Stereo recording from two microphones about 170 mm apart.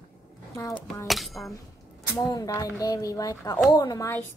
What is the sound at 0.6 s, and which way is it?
Speech, 20° left (ahead or behind).